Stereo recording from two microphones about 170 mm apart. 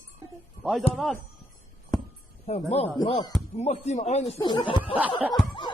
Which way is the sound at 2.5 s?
40° left (ahead or behind).